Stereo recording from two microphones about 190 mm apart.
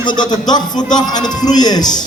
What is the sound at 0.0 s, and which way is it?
A man's voice, 25° left (ahead or behind).